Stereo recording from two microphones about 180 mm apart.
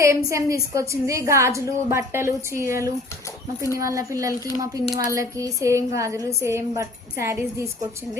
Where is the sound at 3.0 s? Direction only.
15° left (ahead or behind).